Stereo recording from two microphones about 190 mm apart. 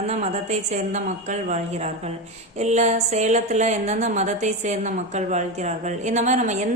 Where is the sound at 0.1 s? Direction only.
35° right (ahead or behind).